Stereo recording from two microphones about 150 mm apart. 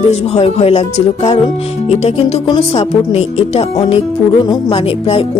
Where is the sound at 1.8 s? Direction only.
45° left (ahead or behind).